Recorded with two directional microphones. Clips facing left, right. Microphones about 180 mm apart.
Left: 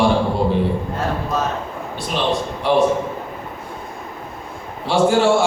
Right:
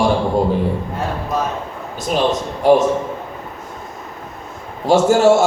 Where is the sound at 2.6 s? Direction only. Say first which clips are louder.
Right 5 dB; 45° right (ahead or behind).